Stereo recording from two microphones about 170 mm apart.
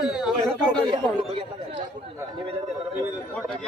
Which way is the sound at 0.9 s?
30° right (ahead or behind).